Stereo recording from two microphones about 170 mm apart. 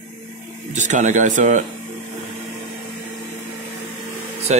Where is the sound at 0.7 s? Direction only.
45° right (ahead or behind).